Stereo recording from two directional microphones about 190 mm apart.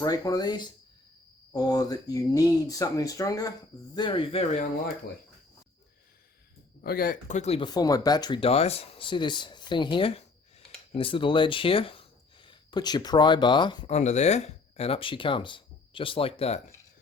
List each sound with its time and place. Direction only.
0.0 s speech: 20° left (ahead or behind)
6.8 s speech: 50° left (ahead or behind); by 13.9 s 25° left (ahead or behind)
13.9 s speech: 35° left (ahead or behind)